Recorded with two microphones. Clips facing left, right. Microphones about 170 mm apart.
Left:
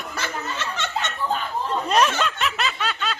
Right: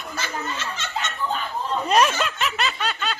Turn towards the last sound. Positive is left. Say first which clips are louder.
# even
turn(degrees=0)  # may be behind; listen again after turning